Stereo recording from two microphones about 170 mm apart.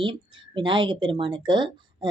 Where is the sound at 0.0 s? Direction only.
30° right (ahead or behind).